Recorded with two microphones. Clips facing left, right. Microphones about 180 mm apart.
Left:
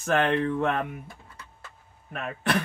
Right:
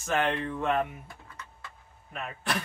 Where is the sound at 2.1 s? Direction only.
60° left (ahead or behind).